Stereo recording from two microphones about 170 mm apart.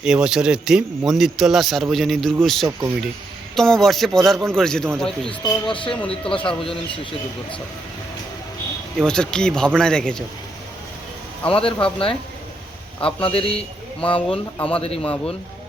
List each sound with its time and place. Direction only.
0.0 s a man's voice: 5° right (ahead or behind)
5.4 s speech: 30° left (ahead or behind)
9.0 s a man's voice: 5° left (ahead or behind)
11.4 s speech: 30° left (ahead or behind)